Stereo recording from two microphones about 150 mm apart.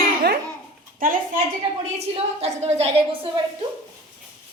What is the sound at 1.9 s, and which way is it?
Speech, 45° right (ahead or behind).